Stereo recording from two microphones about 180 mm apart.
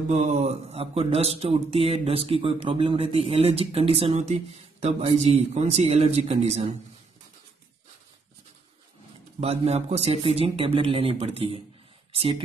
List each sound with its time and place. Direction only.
0.1 s speech: 40° right (ahead or behind)
9.4 s speech: 35° right (ahead or behind)